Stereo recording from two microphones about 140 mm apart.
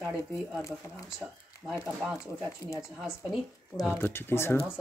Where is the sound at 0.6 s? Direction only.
20° left (ahead or behind).